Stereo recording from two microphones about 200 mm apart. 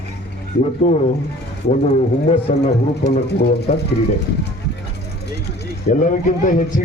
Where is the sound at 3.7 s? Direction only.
35° left (ahead or behind).